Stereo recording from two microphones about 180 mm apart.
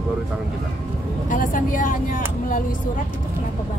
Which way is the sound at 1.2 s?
45° left (ahead or behind).